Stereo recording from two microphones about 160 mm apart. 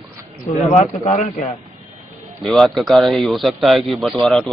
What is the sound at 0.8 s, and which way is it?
Speech, 40° left (ahead or behind).